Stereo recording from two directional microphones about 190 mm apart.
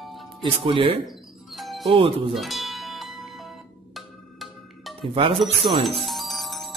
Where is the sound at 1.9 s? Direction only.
30° right (ahead or behind).